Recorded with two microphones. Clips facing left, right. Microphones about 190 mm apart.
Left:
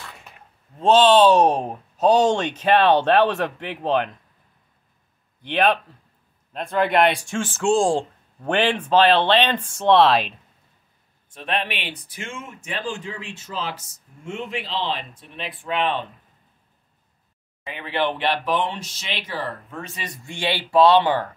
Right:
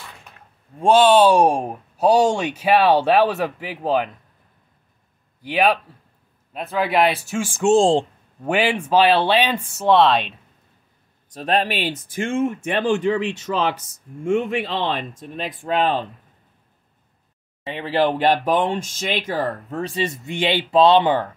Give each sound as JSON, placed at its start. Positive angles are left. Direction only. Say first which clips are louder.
{"t": 0.7, "sound": "speech", "louder": "right 1 dB", "side_deg": -10}
{"t": 5.4, "sound": "speech", "louder": "right 1 dB", "side_deg": -10}
{"t": 7.7, "sound": "speech", "louder": "right 4 dB", "side_deg": -25}
{"t": 8.5, "sound": "speech", "louder": "right 1 dB", "side_deg": -10}
{"t": 11.2, "sound": "speech", "louder": "right 6 dB", "side_deg": -40}
{"t": 17.7, "sound": "speech", "louder": "right 5 dB", "side_deg": -35}